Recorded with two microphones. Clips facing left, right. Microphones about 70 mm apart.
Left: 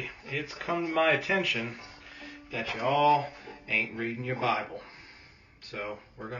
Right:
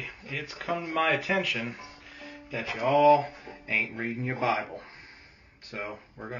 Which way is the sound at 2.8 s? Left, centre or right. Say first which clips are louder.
Right 4 dB; right.